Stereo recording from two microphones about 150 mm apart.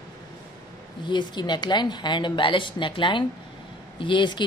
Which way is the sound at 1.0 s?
30° left (ahead or behind).